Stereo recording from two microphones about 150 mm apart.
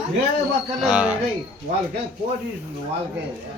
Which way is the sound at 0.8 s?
10° right (ahead or behind).